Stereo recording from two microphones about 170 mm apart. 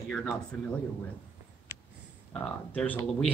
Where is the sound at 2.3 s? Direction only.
5° left (ahead or behind).